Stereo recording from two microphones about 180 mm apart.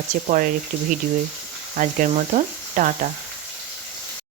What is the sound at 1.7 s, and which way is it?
Speech, 45° right (ahead or behind).